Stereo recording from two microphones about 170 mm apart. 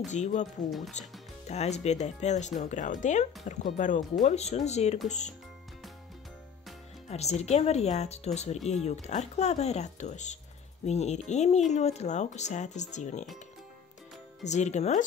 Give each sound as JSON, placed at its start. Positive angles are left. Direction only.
{"t": 0.1, "sound": "speech", "side_deg": 45}
{"t": 0.7, "sound": "speech", "side_deg": 0}
{"t": 1.5, "sound": "speech", "side_deg": 40}
{"t": 7.1, "sound": "speech", "side_deg": 40}
{"t": 14.4, "sound": "speech", "side_deg": 40}